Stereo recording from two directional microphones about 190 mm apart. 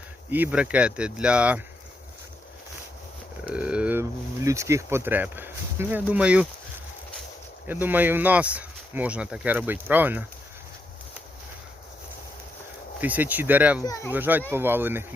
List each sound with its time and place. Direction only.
0.3 s speech: 10° right (ahead or behind)
3.4 s a sound: 5° right (ahead or behind)
4.4 s speech: 15° right (ahead or behind)
7.7 s speech: 10° right (ahead or behind)
13.0 s speech: 10° right (ahead or behind)
13.8 s speech: 15° left (ahead or behind)
14.1 s speech: 10° right (ahead or behind)